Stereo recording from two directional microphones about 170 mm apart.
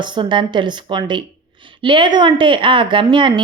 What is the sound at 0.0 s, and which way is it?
A woman's voice, 25° right (ahead or behind).